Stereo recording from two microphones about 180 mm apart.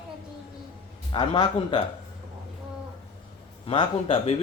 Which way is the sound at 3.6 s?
30° left (ahead or behind).